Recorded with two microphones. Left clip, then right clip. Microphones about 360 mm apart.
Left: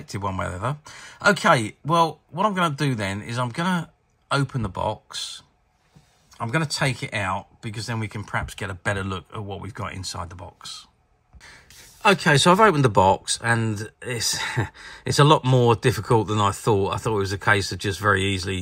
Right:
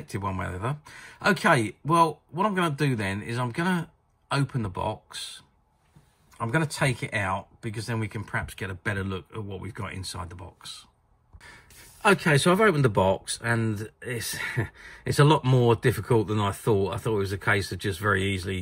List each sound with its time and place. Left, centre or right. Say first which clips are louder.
0.0 s speech: left 4 dB; centre